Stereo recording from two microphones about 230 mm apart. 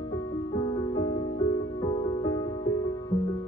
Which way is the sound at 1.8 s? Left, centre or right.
Centre.